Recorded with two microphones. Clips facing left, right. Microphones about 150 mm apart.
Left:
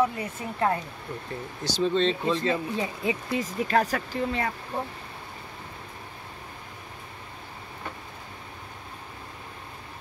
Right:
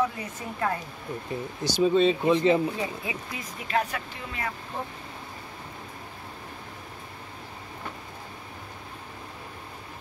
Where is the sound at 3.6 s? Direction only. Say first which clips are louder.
Left 1 dB; 45° left (ahead or behind).